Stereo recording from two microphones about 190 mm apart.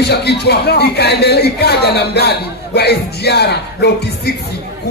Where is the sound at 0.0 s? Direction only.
60° left (ahead or behind).